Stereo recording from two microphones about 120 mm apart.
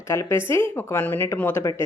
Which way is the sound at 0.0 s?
20° left (ahead or behind).